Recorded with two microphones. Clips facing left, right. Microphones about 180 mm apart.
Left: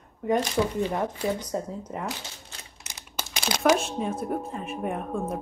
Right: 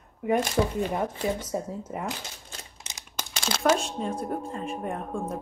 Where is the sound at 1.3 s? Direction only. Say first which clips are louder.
Even; 5° right (ahead or behind).